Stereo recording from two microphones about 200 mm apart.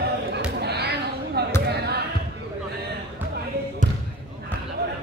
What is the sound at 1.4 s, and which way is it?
Basketball bounce, 55° right (ahead or behind).